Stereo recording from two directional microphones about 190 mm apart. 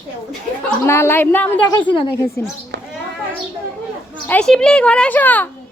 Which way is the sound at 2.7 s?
65° right (ahead or behind).